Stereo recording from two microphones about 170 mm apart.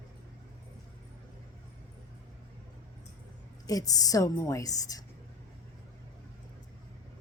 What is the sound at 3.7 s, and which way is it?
A woman's voice, 20° left (ahead or behind).